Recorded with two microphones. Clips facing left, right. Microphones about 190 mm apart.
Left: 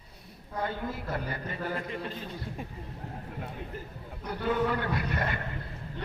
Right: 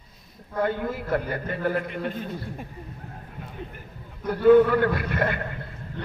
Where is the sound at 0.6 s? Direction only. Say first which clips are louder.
Right 8 dB; 55° right (ahead or behind).